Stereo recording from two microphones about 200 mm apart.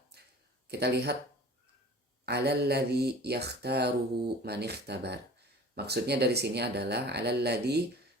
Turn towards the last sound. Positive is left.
turn(degrees=-55)  # may be behind; listen again after turning